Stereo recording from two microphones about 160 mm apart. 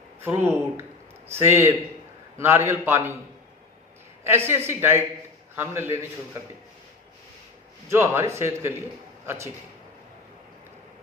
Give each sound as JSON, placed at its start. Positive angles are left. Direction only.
{"t": 0.3, "sound": "speech", "side_deg": -15}
{"t": 4.4, "sound": "speech", "side_deg": -15}
{"t": 7.9, "sound": "a man's voice", "side_deg": -15}